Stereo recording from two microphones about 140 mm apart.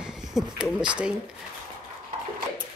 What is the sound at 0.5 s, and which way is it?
Speech, 5° right (ahead or behind).